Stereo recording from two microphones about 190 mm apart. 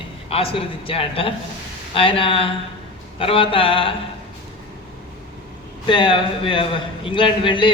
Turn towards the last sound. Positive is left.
turn(degrees=25)  # may be behind; listen again after turning